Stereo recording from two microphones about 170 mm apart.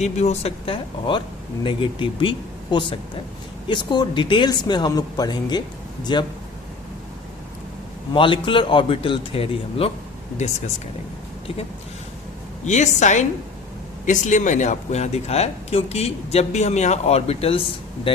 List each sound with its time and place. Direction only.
0.0 s a man's voice: 40° left (ahead or behind); by 6.2 s 25° left (ahead or behind)
8.1 s speech: 30° left (ahead or behind)
12.6 s a woman's voice: 45° left (ahead or behind)